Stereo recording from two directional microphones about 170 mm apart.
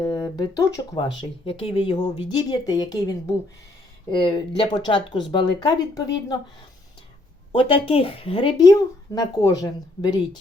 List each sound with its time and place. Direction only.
0.0 s speech: 20° left (ahead or behind)
1.5 s speech: 35° left (ahead or behind)
4.1 s speech: 25° left (ahead or behind)
7.5 s speech: 30° left (ahead or behind)